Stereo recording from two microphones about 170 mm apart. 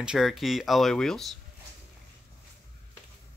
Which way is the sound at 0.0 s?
5° right (ahead or behind).